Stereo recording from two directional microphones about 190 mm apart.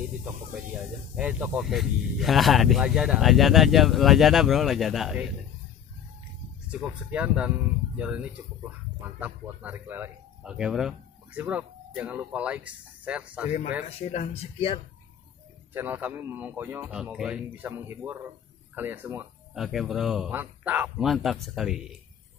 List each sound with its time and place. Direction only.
1.1 s speech: 10° right (ahead or behind)
6.7 s speech: 5° right (ahead or behind)
13.8 s speech: 35° left (ahead or behind)
15.7 s speech: 10° right (ahead or behind)
19.5 s speech: centre (ahead or behind)